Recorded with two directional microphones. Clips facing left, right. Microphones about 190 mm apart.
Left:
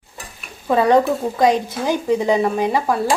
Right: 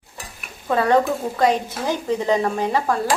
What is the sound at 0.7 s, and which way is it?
A woman's voice, 15° left (ahead or behind).